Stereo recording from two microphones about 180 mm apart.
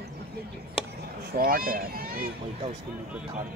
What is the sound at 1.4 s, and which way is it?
Speech, 55° right (ahead or behind).